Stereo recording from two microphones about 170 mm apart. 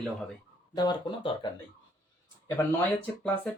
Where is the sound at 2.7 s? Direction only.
10° left (ahead or behind).